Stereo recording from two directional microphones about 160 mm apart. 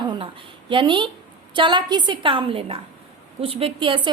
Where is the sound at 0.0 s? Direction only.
30° right (ahead or behind).